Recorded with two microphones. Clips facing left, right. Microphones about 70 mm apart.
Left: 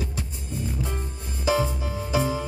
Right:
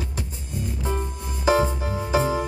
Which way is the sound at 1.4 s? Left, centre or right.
Right.